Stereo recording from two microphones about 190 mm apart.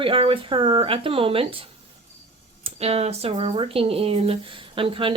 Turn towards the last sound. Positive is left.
turn(degrees=-30)  # may be behind; listen again after turning